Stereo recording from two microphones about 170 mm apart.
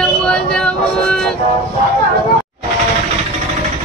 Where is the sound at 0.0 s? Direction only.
5° left (ahead or behind).